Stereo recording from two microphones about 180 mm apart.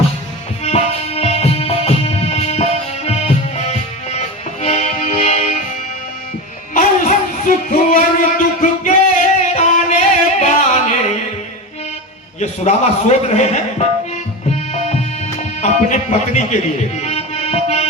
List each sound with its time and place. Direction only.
0.6 s music: 35° left (ahead or behind)
6.7 s a sound: 50° left (ahead or behind)
10.4 s music: 40° left (ahead or behind)
12.4 s a man's voice: 40° left (ahead or behind)
14.5 s tabla: 40° left (ahead or behind)
15.6 s speech: 40° left (ahead or behind)